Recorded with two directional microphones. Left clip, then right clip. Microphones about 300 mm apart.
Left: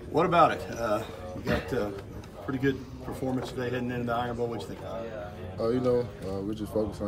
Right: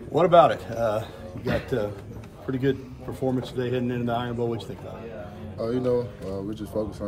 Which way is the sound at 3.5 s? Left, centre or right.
Centre.